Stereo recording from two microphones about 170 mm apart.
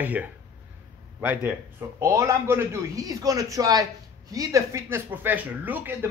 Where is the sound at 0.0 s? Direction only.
10° right (ahead or behind).